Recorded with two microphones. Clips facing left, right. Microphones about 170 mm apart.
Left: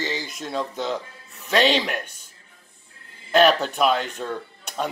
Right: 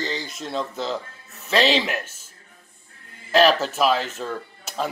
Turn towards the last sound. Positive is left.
turn(degrees=0)  # may be behind; listen again after turning